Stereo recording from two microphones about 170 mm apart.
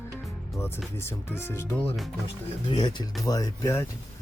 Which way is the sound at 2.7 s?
25° left (ahead or behind).